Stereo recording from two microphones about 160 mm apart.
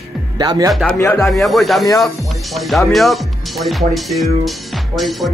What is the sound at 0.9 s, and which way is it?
Speech, 20° left (ahead or behind).